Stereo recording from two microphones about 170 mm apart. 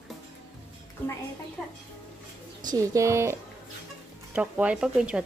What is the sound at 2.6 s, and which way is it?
Speech, 20° right (ahead or behind).